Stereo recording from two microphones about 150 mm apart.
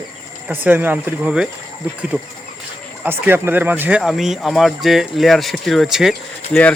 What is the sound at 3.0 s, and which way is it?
Speech, 15° right (ahead or behind).